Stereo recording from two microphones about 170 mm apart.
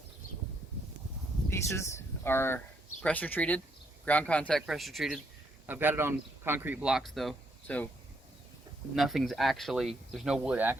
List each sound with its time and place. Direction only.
1.5 s a sound: 15° left (ahead or behind)
3.0 s speech: 10° left (ahead or behind)
5.6 s speech: 10° right (ahead or behind); by 7.9 s 5° left (ahead or behind)
9.0 s speech: centre (ahead or behind)